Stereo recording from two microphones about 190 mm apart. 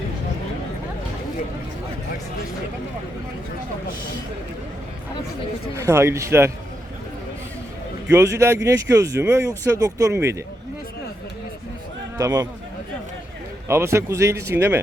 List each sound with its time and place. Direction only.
5.7 s speech: 15° right (ahead or behind)
8.1 s speech: 15° right (ahead or behind)
12.1 s speech: 20° right (ahead or behind)
13.7 s speech: 15° right (ahead or behind)